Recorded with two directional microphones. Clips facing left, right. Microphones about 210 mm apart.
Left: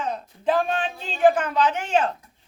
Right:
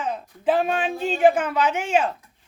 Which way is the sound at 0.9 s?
55° right (ahead or behind).